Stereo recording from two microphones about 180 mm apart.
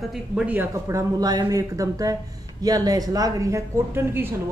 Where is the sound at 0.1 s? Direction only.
5° right (ahead or behind).